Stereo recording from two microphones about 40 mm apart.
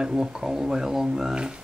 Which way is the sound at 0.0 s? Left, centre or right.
Centre.